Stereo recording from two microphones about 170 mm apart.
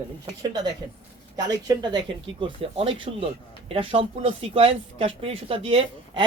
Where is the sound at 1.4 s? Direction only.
20° right (ahead or behind).